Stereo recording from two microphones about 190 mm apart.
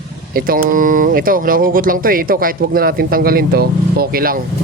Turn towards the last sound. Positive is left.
turn(degrees=-50)  # may be behind; listen again after turning